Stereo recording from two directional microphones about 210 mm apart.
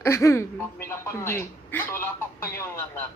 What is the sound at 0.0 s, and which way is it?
A woman's voice, 15° left (ahead or behind).